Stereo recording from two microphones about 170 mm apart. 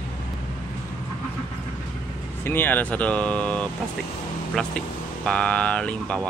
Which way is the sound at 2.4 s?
10° left (ahead or behind).